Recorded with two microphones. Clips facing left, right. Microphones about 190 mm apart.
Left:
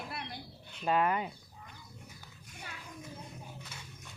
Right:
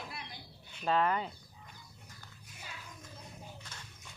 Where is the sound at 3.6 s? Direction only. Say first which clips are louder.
Left 2 dB; 10° left (ahead or behind).